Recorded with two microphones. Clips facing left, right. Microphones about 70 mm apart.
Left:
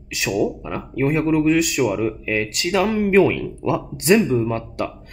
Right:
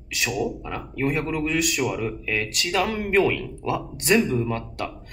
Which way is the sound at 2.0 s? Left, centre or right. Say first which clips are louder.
Left 5 dB; centre.